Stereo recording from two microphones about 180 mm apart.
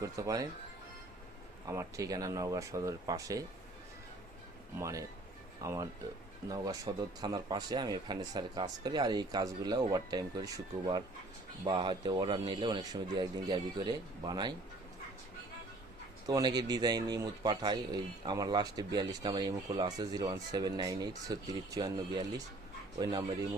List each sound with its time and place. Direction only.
0.0 s a man's voice: 20° right (ahead or behind)
1.6 s a man's voice: 15° right (ahead or behind)
4.8 s a man's voice: 20° right (ahead or behind)
16.2 s a man's voice: 20° right (ahead or behind)